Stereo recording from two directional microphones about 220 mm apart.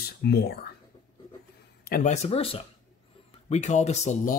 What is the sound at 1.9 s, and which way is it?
Speech, 30° left (ahead or behind).